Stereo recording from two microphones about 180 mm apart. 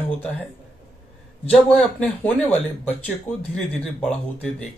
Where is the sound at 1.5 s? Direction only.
5° left (ahead or behind).